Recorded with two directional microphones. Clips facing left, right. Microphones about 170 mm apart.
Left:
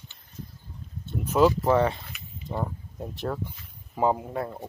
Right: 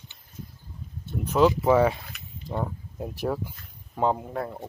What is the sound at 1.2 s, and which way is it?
Speech, 5° left (ahead or behind).